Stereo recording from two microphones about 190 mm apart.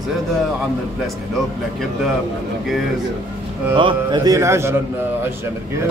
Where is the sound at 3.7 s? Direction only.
25° right (ahead or behind).